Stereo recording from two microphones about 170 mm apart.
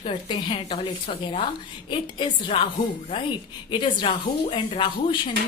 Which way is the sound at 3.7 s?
30° left (ahead or behind).